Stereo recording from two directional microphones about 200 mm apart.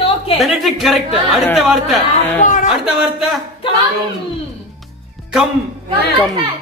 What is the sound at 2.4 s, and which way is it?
Speech, 40° left (ahead or behind).